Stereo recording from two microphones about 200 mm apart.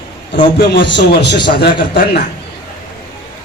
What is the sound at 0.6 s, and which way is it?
A man's voice, 50° left (ahead or behind).